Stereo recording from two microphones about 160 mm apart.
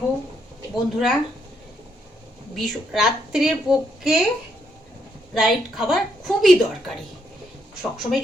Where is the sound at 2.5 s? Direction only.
Centre (ahead or behind).